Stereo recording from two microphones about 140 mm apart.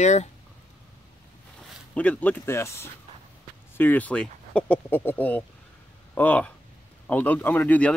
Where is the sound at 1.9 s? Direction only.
10° left (ahead or behind).